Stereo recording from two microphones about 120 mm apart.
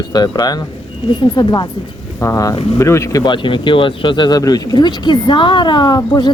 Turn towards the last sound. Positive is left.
turn(degrees=40)  # may be behind; listen again after turning